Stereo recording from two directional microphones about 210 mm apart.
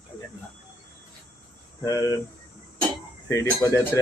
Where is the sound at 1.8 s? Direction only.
15° left (ahead or behind).